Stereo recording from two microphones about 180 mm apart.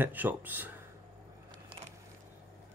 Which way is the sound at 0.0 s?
10° right (ahead or behind).